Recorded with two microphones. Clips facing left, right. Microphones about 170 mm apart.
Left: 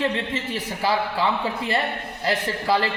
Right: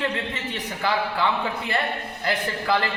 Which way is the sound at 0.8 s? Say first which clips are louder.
Left 1 dB; 35° left (ahead or behind).